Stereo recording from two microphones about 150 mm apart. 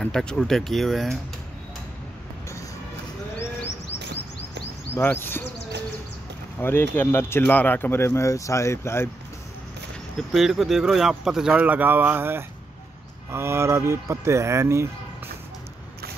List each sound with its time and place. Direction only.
0.0 s speech: 5° left (ahead or behind)
4.9 s speech: 15° left (ahead or behind)
6.6 s speech: 15° left (ahead or behind)
10.1 s speech: centre (ahead or behind); by 14.9 s 20° right (ahead or behind)